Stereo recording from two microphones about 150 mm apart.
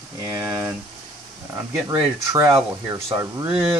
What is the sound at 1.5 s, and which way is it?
A man's voice, 20° right (ahead or behind).